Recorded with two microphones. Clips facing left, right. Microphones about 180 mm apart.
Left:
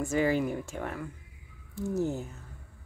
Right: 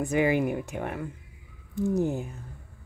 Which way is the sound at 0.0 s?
15° right (ahead or behind).